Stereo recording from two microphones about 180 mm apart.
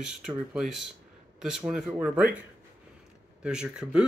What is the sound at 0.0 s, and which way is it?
Speech, 5° right (ahead or behind).